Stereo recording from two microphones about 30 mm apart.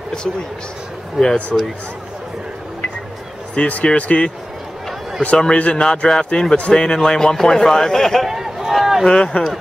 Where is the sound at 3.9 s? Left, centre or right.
Left.